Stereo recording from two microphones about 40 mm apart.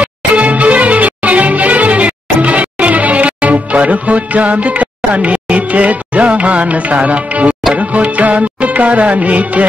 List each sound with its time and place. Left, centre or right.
0.0 s music: right